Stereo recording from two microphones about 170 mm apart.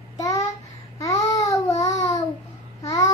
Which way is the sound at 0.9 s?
20° left (ahead or behind).